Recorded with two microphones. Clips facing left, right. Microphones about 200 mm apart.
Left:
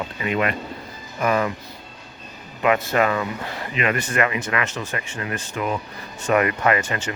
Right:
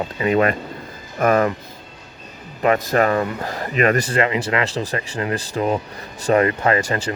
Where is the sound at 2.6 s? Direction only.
40° right (ahead or behind).